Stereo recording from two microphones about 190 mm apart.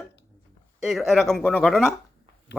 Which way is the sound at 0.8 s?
Centre (ahead or behind).